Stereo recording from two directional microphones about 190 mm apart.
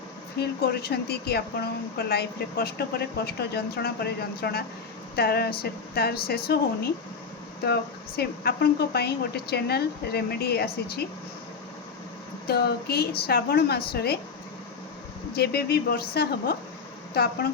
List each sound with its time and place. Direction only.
0.3 s speech: 55° left (ahead or behind)
7.6 s speech: 55° left (ahead or behind)
12.5 s speech: 55° left (ahead or behind)
15.3 s speech: 55° left (ahead or behind)